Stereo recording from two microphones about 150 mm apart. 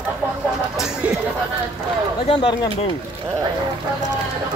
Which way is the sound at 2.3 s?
35° left (ahead or behind).